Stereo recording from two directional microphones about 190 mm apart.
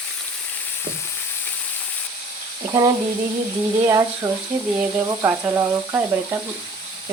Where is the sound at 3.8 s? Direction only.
20° right (ahead or behind).